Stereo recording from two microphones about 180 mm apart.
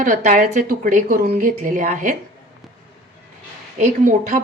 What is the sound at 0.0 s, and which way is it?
Speech, 40° right (ahead or behind).